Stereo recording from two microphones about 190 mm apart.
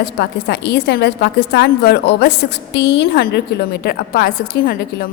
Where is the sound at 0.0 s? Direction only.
60° left (ahead or behind).